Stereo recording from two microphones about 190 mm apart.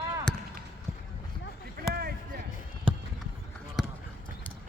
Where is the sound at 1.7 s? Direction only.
55° right (ahead or behind).